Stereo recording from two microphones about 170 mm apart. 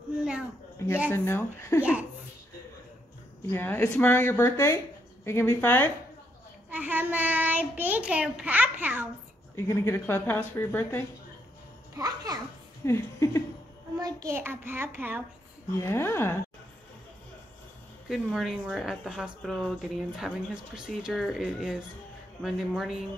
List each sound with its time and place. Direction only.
0.2 s a sound: 5° right (ahead or behind)
1.1 s a woman's voice: 15° left (ahead or behind)
1.8 s a child's voice: 10° right (ahead or behind)
3.5 s a woman's voice: 10° left (ahead or behind)
6.7 s a child's voice: 10° right (ahead or behind)
9.7 s a woman's voice: 15° left (ahead or behind)
12.0 s a child's voice: 20° right (ahead or behind)
12.8 s a woman's voice: 15° left (ahead or behind)
13.9 s a child's voice: 20° right (ahead or behind)
15.8 s a woman's voice: 15° left (ahead or behind)
18.0 s speech: centre (ahead or behind)